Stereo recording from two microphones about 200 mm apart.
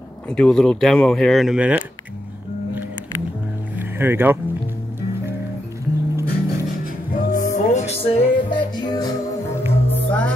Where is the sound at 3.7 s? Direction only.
10° right (ahead or behind).